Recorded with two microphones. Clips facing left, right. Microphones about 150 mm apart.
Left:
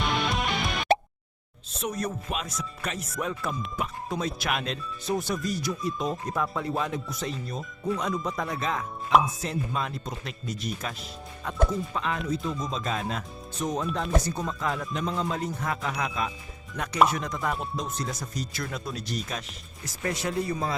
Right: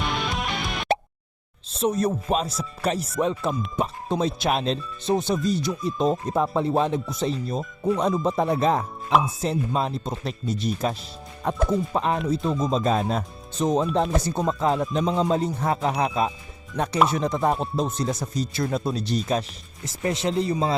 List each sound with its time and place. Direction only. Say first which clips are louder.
0.0 s music: even; centre (ahead or behind)
1.8 s speech: right 8 dB; 30° right (ahead or behind)
11.9 s speech: right 6 dB; 40° right (ahead or behind)
13.6 s speech: right 8 dB; 25° right (ahead or behind)